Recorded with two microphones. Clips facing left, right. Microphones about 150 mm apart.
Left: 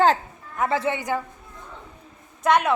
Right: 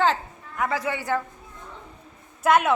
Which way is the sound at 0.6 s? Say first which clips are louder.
Left 3 dB; 25° left (ahead or behind).